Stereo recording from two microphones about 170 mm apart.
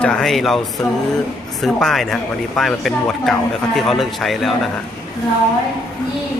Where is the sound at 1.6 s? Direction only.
Centre (ahead or behind).